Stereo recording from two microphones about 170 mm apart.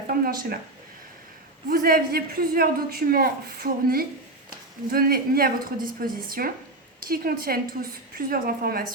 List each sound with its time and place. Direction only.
0.1 s speech: 60° right (ahead or behind)
1.7 s a woman's voice: 60° right (ahead or behind)